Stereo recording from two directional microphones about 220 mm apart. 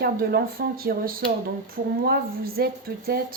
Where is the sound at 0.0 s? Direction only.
45° right (ahead or behind).